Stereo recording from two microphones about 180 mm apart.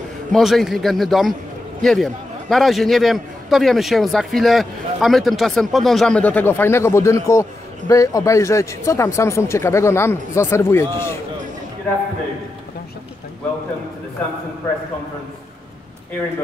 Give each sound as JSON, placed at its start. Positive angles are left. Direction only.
{"t": 0.3, "sound": "a man's voice", "side_deg": 0}